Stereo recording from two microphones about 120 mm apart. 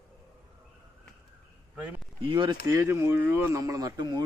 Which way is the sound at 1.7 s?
10° right (ahead or behind).